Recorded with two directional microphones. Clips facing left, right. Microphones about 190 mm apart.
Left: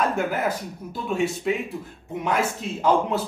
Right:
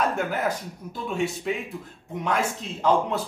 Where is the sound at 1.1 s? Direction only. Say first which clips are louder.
Left 3 dB; centre (ahead or behind).